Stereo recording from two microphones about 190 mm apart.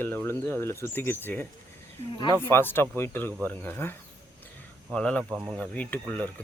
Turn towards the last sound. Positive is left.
turn(degrees=10)  # may be behind; listen again after turning